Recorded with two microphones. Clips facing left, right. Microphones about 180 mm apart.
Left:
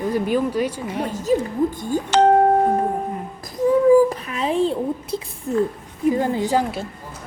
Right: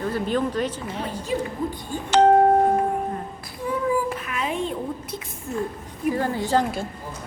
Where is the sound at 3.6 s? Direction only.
40° left (ahead or behind).